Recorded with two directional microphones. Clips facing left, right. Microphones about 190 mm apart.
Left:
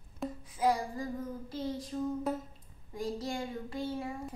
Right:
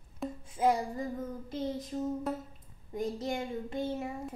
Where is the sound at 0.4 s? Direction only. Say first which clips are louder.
Right 2 dB; 25° right (ahead or behind).